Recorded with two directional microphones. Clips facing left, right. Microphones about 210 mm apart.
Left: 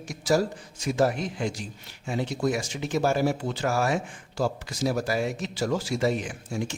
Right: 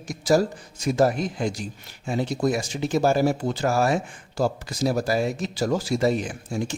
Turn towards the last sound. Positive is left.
turn(degrees=-35)  # may be behind; listen again after turning